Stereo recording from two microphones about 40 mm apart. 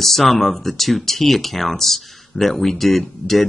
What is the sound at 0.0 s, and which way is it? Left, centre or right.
Speech, centre.